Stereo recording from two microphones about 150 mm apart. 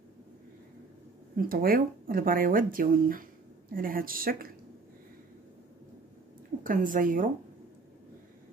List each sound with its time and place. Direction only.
1.3 s speech: 75° right (ahead or behind)
6.6 s a woman's voice: 65° right (ahead or behind)